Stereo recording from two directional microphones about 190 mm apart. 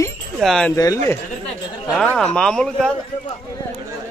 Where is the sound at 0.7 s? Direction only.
15° left (ahead or behind).